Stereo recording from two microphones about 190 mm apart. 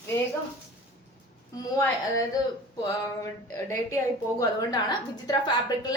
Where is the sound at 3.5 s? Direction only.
15° left (ahead or behind).